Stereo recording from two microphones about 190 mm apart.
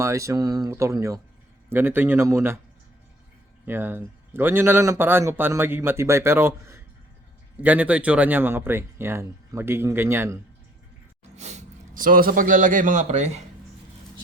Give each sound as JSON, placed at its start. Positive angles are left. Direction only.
{"t": 0.0, "sound": "speech", "side_deg": -15}
{"t": 3.7, "sound": "speech", "side_deg": -10}
{"t": 11.3, "sound": "a man's voice", "side_deg": -35}